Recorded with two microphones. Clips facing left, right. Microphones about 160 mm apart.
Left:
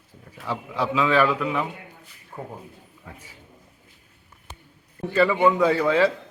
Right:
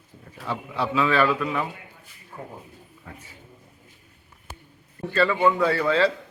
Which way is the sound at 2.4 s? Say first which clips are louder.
Left 3 dB; 25° left (ahead or behind).